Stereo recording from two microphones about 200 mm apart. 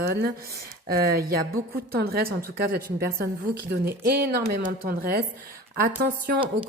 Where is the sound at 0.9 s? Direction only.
50° right (ahead or behind).